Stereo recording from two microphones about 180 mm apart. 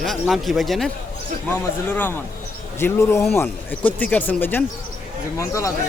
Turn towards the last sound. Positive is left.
turn(degrees=15)  # may be behind; listen again after turning